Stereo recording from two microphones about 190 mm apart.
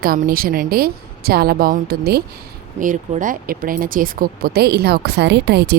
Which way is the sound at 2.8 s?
45° right (ahead or behind).